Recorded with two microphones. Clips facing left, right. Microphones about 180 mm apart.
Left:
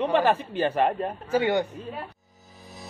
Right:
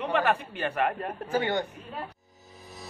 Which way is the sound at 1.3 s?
15° left (ahead or behind).